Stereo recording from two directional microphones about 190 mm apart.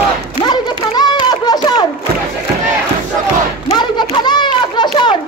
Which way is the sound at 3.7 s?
25° left (ahead or behind).